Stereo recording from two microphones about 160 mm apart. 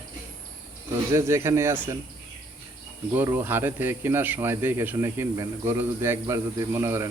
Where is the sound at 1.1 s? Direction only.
15° right (ahead or behind).